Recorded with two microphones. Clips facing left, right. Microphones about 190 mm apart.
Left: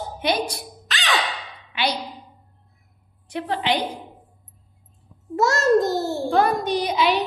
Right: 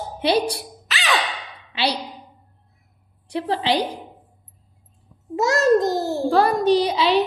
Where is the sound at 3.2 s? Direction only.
35° right (ahead or behind).